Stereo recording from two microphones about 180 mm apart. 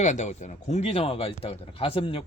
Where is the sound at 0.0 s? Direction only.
40° left (ahead or behind).